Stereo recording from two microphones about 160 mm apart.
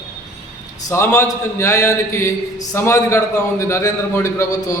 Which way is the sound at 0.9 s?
15° left (ahead or behind).